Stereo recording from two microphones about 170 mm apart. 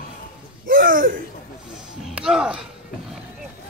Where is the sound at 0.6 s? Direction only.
55° right (ahead or behind).